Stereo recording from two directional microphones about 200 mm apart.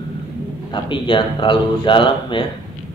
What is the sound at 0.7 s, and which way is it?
Speech, 25° left (ahead or behind).